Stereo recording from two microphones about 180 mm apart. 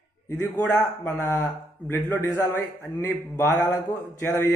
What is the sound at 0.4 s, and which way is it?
Speech, 15° left (ahead or behind).